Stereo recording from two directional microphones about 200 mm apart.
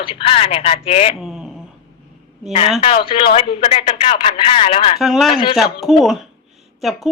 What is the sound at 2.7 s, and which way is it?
A woman's voice, 25° left (ahead or behind).